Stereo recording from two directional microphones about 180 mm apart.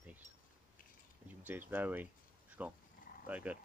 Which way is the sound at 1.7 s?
10° right (ahead or behind).